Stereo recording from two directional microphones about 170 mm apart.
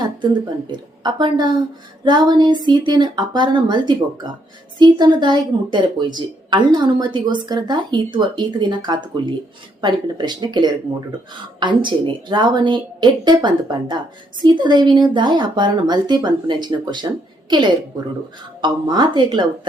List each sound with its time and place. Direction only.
0.7 s speech: 25° right (ahead or behind)